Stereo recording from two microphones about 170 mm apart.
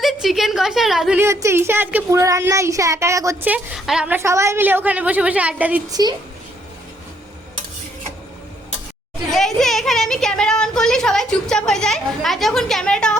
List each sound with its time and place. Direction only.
0.0 s a woman's voice: centre (ahead or behind)
1.2 s speech: 15° right (ahead or behind)
5.9 s speech: 25° right (ahead or behind)
9.3 s a woman's voice: centre (ahead or behind)